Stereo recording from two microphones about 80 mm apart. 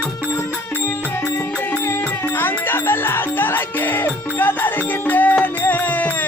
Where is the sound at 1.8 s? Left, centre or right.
Left.